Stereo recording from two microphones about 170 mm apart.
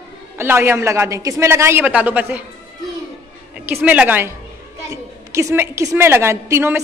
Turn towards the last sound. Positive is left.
turn(degrees=-15)  # may be behind; listen again after turning